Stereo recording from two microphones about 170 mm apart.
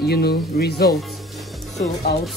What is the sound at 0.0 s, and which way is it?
Speech, 70° left (ahead or behind).